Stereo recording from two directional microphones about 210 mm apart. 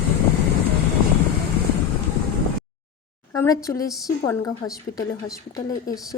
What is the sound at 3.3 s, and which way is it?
A woman's voice, 15° left (ahead or behind).